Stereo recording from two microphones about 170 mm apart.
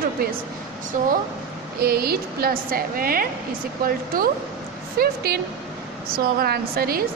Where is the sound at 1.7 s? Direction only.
65° right (ahead or behind).